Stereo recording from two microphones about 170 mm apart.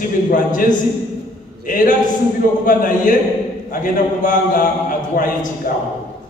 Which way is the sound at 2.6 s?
50° left (ahead or behind).